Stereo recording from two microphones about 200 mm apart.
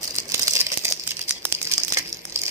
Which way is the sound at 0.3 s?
15° right (ahead or behind).